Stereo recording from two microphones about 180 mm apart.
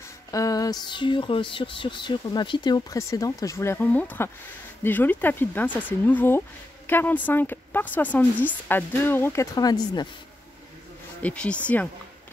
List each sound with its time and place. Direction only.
0.3 s a woman's voice: 20° left (ahead or behind)
11.2 s a woman's voice: 5° left (ahead or behind)